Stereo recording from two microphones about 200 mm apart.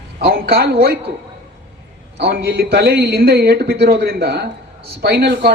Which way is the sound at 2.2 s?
55° right (ahead or behind).